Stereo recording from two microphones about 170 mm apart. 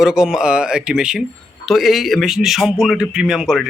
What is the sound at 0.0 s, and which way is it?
Speech, 5° right (ahead or behind).